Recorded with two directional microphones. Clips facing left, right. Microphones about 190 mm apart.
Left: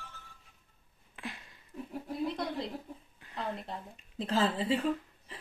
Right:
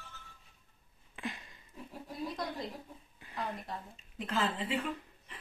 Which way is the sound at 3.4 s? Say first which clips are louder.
Left 2 dB; 30° left (ahead or behind).